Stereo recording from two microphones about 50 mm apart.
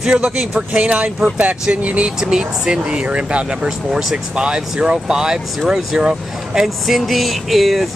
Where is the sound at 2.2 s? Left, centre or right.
Centre.